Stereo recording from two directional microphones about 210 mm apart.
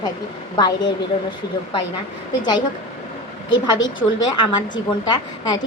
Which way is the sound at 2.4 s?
20° left (ahead or behind).